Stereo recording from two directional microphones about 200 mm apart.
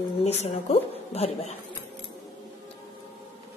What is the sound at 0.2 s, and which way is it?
A woman's voice, 30° left (ahead or behind).